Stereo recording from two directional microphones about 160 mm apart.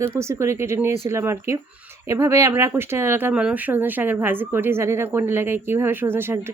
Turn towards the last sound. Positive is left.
turn(degrees=-15)  # may be behind; listen again after turning